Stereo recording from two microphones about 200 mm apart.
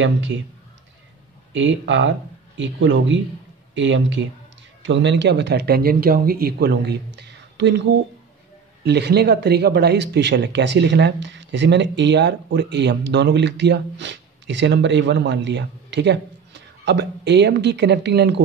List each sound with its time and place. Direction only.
0.0 s speech: 65° right (ahead or behind)
1.5 s speech: 65° right (ahead or behind)